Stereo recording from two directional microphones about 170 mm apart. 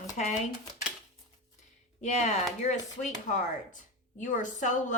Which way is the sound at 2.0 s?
40° left (ahead or behind).